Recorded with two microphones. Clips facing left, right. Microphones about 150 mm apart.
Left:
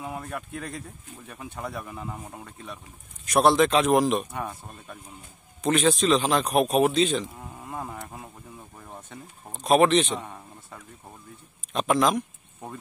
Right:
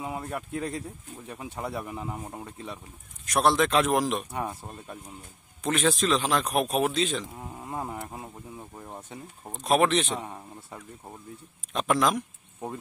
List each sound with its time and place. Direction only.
0.0 s speech: 20° right (ahead or behind)
3.3 s speech: centre (ahead or behind)
4.3 s speech: 15° right (ahead or behind)
5.6 s speech: centre (ahead or behind)
7.3 s insect: 20° right (ahead or behind)
9.1 s speech: centre (ahead or behind)
10.2 s speech: 15° right (ahead or behind)
11.7 s speech: centre (ahead or behind)